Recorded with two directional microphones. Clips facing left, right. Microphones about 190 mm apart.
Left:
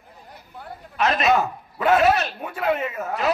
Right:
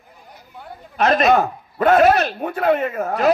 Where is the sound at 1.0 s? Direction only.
45° right (ahead or behind).